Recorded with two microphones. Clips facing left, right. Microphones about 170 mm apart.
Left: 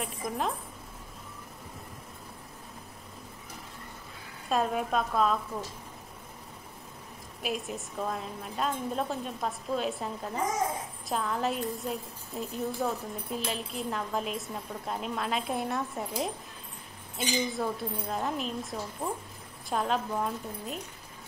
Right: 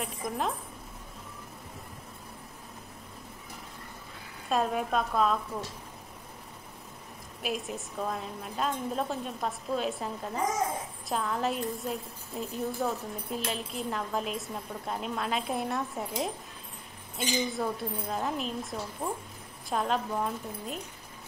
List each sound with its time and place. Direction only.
0.0 s a woman's voice: centre (ahead or behind)
4.5 s a woman's voice: centre (ahead or behind)
7.4 s a woman's voice: centre (ahead or behind)